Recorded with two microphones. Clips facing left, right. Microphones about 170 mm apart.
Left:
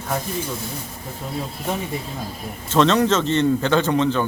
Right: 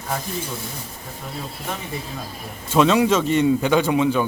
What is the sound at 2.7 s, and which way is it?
A man's voice, 10° right (ahead or behind).